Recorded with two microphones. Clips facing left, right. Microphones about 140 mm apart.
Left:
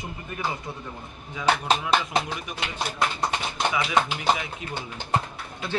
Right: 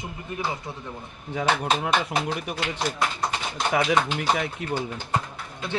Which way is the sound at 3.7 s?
55° right (ahead or behind).